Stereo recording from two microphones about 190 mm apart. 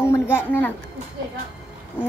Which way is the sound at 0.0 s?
15° left (ahead or behind).